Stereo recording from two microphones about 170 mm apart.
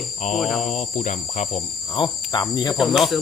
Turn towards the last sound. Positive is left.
turn(degrees=0)  # may be behind; listen again after turning